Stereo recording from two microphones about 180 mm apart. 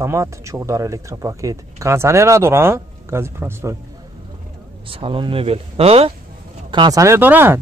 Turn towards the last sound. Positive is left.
turn(degrees=-10)  # may be behind; listen again after turning